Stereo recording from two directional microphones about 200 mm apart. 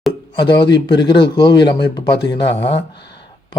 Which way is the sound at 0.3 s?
25° left (ahead or behind).